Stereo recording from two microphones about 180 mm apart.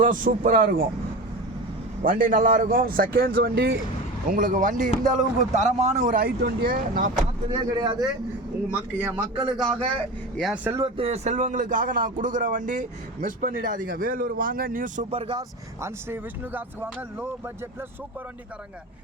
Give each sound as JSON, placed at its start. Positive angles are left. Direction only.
{"t": 0.0, "sound": "speech", "side_deg": -50}
{"t": 2.0, "sound": "speech", "side_deg": -50}
{"t": 4.3, "sound": "speech", "side_deg": -50}
{"t": 7.2, "sound": "speech", "side_deg": -25}
{"t": 8.7, "sound": "speech", "side_deg": -10}
{"t": 10.3, "sound": "speech", "side_deg": -5}
{"t": 10.8, "sound": "speech", "side_deg": -30}
{"t": 15.1, "sound": "speech", "side_deg": -30}
{"t": 15.8, "sound": "speech", "side_deg": -10}